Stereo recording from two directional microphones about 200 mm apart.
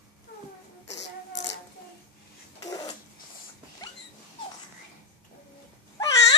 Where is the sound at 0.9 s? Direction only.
60° left (ahead or behind).